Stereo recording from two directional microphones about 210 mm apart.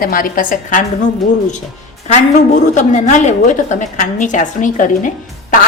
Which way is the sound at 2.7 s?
35° left (ahead or behind).